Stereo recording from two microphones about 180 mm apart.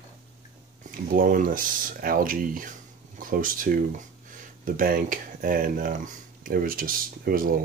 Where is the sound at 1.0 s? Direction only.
50° right (ahead or behind).